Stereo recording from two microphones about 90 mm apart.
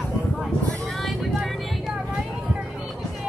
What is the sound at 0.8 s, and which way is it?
Vehicle, centre (ahead or behind).